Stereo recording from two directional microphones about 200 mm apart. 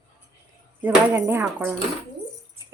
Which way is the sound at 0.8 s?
10° right (ahead or behind).